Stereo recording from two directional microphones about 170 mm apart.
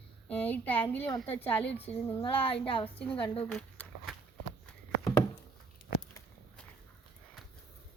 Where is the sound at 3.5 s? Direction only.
5° left (ahead or behind).